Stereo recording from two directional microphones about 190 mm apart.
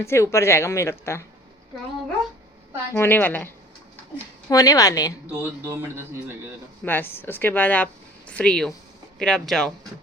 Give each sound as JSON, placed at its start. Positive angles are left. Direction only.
{"t": 0.0, "sound": "a woman's voice", "side_deg": 15}
{"t": 2.9, "sound": "a woman's voice", "side_deg": 10}
{"t": 5.3, "sound": "speech", "side_deg": -10}
{"t": 6.8, "sound": "a woman's voice", "side_deg": 10}